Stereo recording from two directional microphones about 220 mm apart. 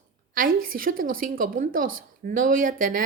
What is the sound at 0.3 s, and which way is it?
A woman's voice, 40° right (ahead or behind).